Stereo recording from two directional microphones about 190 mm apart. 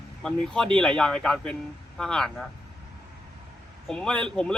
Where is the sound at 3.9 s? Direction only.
5° left (ahead or behind).